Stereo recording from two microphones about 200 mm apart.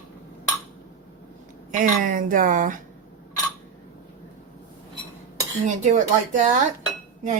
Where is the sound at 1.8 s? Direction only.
40° right (ahead or behind).